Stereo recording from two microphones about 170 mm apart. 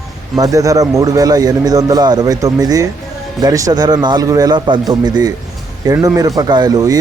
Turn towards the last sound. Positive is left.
turn(degrees=-20)  # may be behind; listen again after turning